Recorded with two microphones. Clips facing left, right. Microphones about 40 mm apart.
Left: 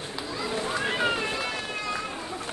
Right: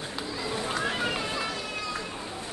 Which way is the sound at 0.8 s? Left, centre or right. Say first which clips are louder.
Left 5 dB; left.